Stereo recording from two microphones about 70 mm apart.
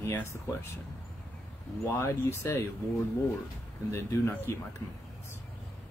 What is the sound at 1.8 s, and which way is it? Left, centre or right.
Speech, left.